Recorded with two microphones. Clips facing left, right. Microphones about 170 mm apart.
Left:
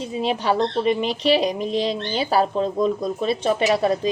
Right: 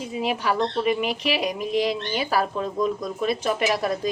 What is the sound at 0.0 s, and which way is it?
Speech, 30° left (ahead or behind).